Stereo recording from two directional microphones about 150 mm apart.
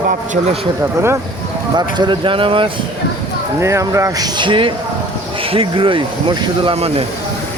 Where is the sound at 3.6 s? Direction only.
20° right (ahead or behind); by 7.1 s 40° right (ahead or behind).